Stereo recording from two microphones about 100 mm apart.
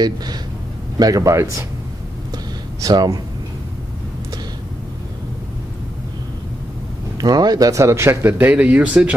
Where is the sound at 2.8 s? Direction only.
40° right (ahead or behind).